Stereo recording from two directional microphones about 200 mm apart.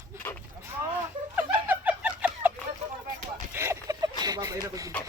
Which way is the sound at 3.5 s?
15° right (ahead or behind).